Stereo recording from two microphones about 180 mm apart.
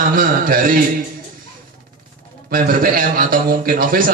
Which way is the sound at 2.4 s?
55° right (ahead or behind).